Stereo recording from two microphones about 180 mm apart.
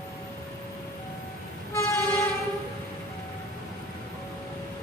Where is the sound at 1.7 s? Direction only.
15° left (ahead or behind).